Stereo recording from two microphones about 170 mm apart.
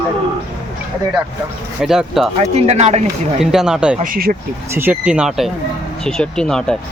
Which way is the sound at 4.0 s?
55° right (ahead or behind).